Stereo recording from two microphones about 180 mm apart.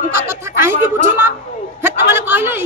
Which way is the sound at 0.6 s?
15° right (ahead or behind).